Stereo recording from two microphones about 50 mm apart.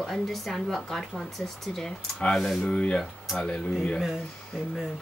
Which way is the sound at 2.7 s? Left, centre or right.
Centre.